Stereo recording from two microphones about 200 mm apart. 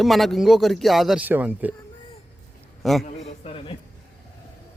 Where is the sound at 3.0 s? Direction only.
30° left (ahead or behind).